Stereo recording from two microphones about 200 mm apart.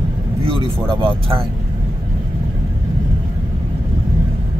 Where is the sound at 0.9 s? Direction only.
25° right (ahead or behind).